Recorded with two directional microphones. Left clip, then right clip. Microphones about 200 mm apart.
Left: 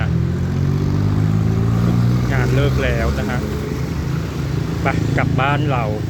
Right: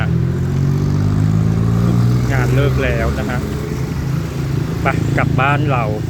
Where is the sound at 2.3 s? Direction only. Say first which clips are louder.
Right 2 dB; centre (ahead or behind).